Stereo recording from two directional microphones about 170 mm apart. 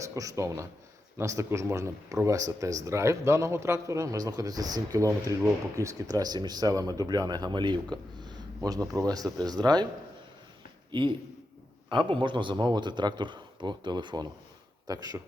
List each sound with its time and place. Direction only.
0.0 s speech: 20° right (ahead or behind)
10.9 s speech: 30° right (ahead or behind)